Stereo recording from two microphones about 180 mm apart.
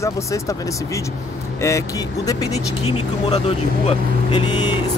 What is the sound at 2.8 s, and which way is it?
Speech, 35° left (ahead or behind).